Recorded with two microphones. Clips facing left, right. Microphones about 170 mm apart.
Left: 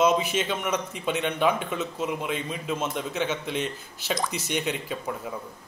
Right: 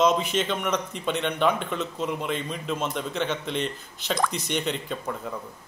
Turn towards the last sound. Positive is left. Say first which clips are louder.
# even
turn(degrees=5)  # may be behind; listen again after turning